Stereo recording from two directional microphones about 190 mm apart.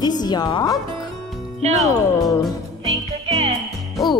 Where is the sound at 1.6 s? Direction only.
35° right (ahead or behind).